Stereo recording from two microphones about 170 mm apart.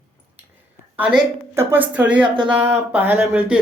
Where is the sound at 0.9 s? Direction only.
10° right (ahead or behind).